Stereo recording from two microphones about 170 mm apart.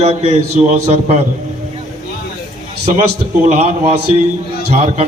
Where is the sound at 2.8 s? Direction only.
40° right (ahead or behind).